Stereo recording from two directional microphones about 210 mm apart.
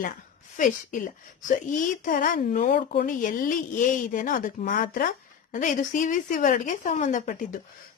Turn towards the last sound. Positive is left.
turn(degrees=40)  # may be behind; listen again after turning